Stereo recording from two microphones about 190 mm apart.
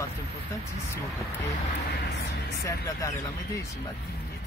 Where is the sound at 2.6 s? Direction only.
15° left (ahead or behind).